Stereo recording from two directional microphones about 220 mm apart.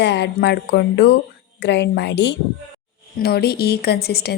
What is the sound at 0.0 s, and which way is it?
A woman's voice, 50° left (ahead or behind).